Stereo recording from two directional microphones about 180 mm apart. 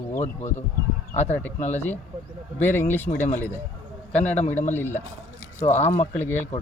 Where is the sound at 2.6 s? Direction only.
10° left (ahead or behind).